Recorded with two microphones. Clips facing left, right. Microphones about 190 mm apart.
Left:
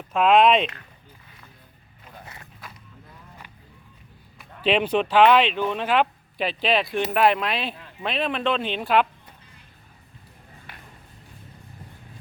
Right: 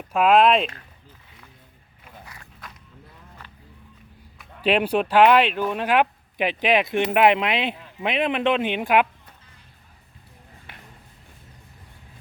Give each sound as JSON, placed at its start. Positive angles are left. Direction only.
{"t": 0.1, "sound": "speech", "side_deg": -5}
{"t": 2.2, "sound": "walk", "side_deg": 25}
{"t": 4.6, "sound": "speech", "side_deg": -10}